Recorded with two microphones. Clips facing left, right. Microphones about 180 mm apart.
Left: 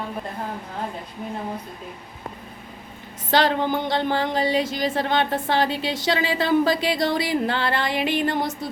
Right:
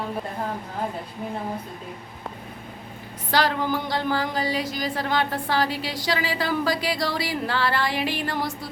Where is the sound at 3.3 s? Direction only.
25° left (ahead or behind).